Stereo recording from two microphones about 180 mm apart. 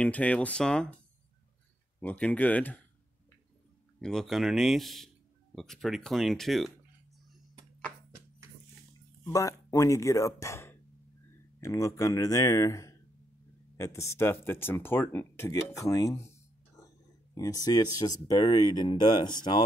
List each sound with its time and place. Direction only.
0.0 s speech: 5° left (ahead or behind)
2.0 s speech: 10° left (ahead or behind)
4.0 s speech: 5° left (ahead or behind)
9.2 s speech: 20° left (ahead or behind)
16.8 s a sound: 20° left (ahead or behind)
17.9 s speech: 20° left (ahead or behind)